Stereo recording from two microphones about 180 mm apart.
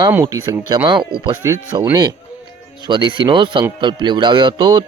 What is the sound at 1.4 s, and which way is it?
Speech, 20° right (ahead or behind).